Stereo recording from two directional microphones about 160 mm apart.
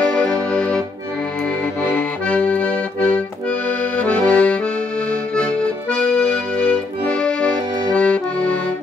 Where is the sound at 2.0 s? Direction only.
10° left (ahead or behind).